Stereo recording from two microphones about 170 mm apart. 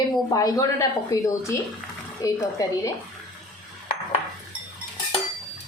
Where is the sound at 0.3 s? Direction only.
20° left (ahead or behind).